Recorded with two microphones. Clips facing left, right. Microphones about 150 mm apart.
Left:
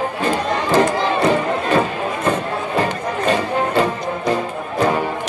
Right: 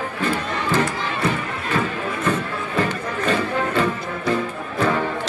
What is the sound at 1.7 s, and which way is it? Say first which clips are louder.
Music: left 2 dB; 25° left (ahead or behind).